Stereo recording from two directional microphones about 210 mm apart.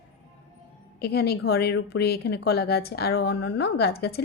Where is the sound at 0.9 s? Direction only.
50° left (ahead or behind).